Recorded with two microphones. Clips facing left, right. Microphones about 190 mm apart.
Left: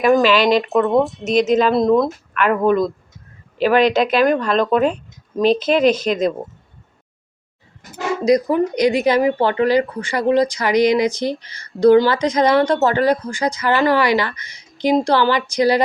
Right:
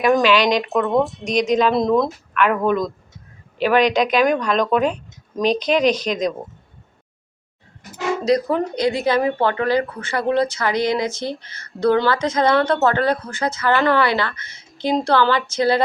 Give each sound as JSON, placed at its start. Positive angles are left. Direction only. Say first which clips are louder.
{"t": 0.0, "sound": "speech", "louder": "left 2 dB", "side_deg": 0}
{"t": 8.2, "sound": "speech", "louder": "left 4 dB", "side_deg": 10}